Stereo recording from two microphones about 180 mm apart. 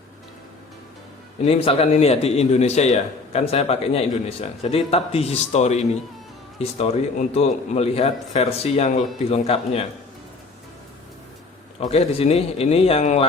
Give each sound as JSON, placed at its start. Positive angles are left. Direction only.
{"t": 1.5, "sound": "a man's voice", "side_deg": 35}
{"t": 11.8, "sound": "a man's voice", "side_deg": 35}